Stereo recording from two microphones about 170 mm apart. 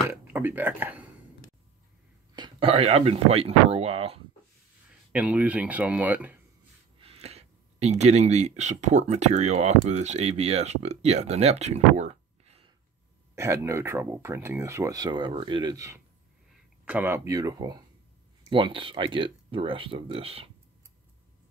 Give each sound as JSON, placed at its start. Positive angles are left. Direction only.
{"t": 0.1, "sound": "speech", "side_deg": -10}
{"t": 2.3, "sound": "speech", "side_deg": -30}
{"t": 5.1, "sound": "speech", "side_deg": -10}
{"t": 7.0, "sound": "speech", "side_deg": -35}
{"t": 13.3, "sound": "speech", "side_deg": -15}